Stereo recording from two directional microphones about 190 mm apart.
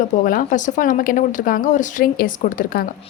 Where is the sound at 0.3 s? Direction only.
45° left (ahead or behind).